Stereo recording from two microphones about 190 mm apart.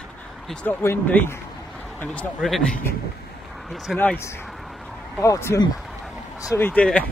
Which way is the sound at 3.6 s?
Centre (ahead or behind).